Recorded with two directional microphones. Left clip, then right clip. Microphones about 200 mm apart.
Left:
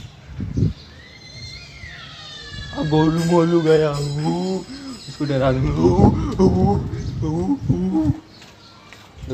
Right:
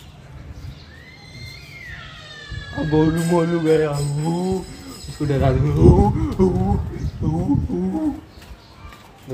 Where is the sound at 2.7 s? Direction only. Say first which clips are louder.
Even; 50° left (ahead or behind).